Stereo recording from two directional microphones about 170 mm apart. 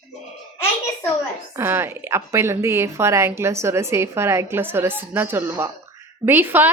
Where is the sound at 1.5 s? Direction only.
15° right (ahead or behind).